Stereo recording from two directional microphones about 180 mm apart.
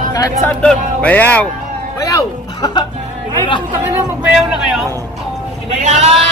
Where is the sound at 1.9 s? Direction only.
20° left (ahead or behind).